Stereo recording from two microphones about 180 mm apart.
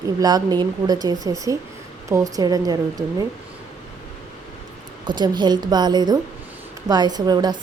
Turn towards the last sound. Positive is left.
turn(degrees=-25)  # may be behind; listen again after turning